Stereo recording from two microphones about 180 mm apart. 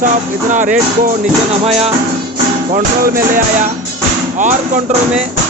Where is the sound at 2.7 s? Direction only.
50° right (ahead or behind).